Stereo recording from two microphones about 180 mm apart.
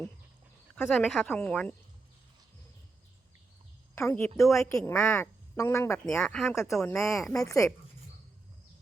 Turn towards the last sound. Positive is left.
turn(degrees=15)  # may be behind; listen again after turning